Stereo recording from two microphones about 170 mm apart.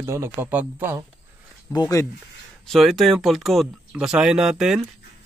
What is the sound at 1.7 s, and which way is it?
Speech, 20° left (ahead or behind).